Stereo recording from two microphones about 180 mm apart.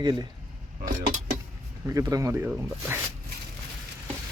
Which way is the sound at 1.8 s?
20° right (ahead or behind).